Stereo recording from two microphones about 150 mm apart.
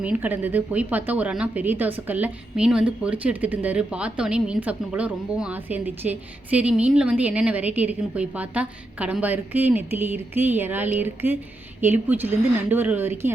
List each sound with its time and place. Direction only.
0.0 s speech: 10° right (ahead or behind)